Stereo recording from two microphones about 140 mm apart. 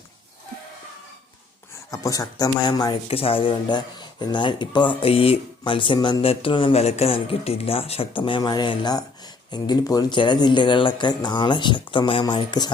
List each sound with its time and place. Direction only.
1.9 s speech: 25° left (ahead or behind)
3.1 s speech: 45° left (ahead or behind)